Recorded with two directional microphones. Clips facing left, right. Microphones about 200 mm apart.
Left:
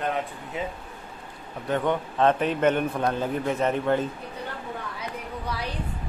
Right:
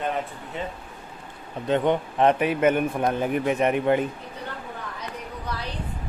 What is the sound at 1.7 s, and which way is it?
A man's voice, 20° right (ahead or behind).